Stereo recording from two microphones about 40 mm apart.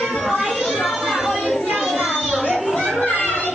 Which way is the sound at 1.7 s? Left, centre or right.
Centre.